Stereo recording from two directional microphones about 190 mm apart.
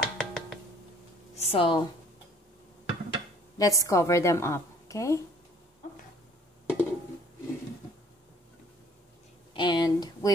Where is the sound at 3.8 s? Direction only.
15° left (ahead or behind).